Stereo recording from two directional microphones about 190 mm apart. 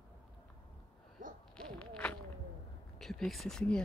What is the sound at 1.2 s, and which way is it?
Hoot, 45° right (ahead or behind).